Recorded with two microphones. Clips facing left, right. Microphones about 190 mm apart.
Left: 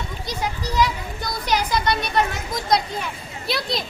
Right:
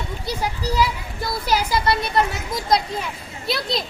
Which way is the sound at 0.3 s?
10° right (ahead or behind).